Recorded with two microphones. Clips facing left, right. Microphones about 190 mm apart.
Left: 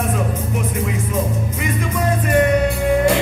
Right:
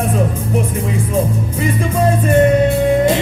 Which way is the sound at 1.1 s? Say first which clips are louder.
Right 4 dB; 30° right (ahead or behind).